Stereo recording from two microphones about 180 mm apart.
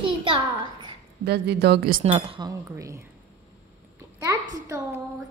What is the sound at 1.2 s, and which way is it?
Speech, 65° right (ahead or behind).